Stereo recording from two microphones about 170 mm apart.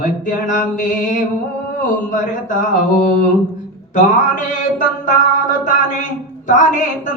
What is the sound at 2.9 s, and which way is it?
Speech, 55° left (ahead or behind).